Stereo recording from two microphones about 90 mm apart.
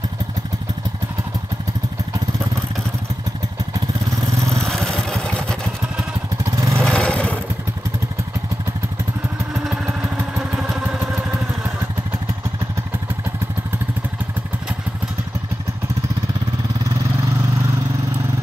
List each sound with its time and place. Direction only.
4.4 s vehicle: 35° right (ahead or behind)
4.6 s vehicle: 5° left (ahead or behind)
6.4 s vehicle: 35° right (ahead or behind)
6.9 s vehicle: 10° left (ahead or behind)